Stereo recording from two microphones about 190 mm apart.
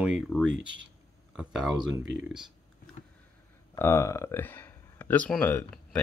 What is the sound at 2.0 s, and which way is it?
Speech, 75° right (ahead or behind).